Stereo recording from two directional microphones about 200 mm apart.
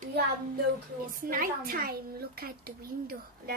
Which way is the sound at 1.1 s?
45° right (ahead or behind).